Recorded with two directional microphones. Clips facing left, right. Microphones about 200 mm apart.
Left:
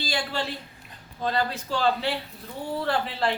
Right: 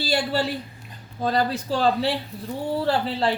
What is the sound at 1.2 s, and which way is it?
Speech, 35° right (ahead or behind).